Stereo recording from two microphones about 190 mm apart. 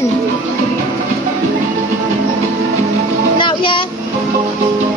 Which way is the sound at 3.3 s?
25° left (ahead or behind).